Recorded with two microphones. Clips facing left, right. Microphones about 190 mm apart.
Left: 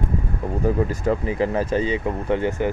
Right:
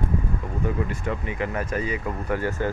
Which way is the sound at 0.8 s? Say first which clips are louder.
Left 7 dB; 35° left (ahead or behind).